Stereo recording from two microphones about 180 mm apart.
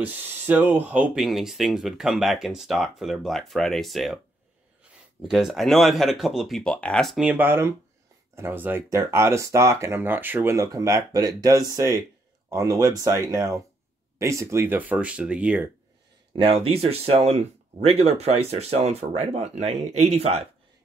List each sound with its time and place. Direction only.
0.0 s speech: 10° right (ahead or behind)
5.3 s speech: centre (ahead or behind)
16.3 s speech: 30° right (ahead or behind)